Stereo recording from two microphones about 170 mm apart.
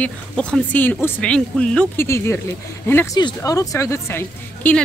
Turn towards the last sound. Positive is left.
turn(degrees=10)  # may be behind; listen again after turning